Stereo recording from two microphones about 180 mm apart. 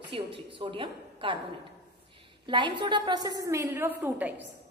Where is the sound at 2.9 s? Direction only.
25° right (ahead or behind); by 4.4 s 10° right (ahead or behind).